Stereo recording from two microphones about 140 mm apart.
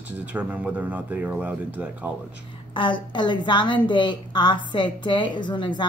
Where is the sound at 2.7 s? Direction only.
35° left (ahead or behind).